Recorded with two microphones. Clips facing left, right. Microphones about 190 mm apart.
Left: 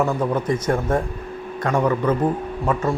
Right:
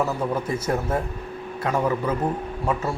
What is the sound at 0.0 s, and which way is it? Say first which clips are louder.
A man's voice: left 3 dB; 5° right (ahead or behind).